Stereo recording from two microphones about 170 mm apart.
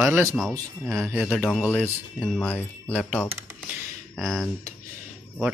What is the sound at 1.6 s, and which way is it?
Jingle bell, 10° left (ahead or behind).